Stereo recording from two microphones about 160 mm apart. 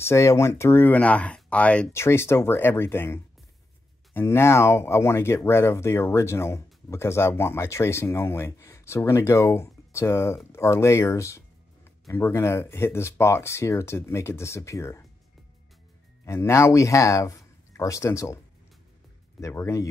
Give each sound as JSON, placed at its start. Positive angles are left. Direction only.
{"t": 0.0, "sound": "speech", "side_deg": 20}
{"t": 16.3, "sound": "speech", "side_deg": 15}
{"t": 19.4, "sound": "speech", "side_deg": 20}